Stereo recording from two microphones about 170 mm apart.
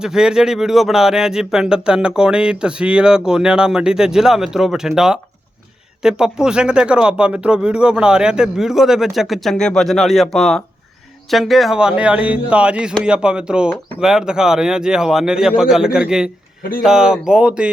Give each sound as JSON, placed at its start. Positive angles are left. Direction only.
{"t": 0.0, "sound": "speech", "side_deg": -5}